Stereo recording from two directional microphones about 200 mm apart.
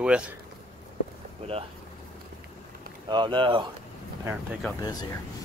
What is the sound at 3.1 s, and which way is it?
Speech, 25° right (ahead or behind).